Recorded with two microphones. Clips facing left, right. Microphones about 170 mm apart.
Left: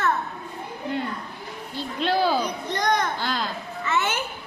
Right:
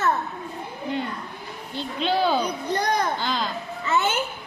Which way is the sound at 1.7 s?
5° left (ahead or behind).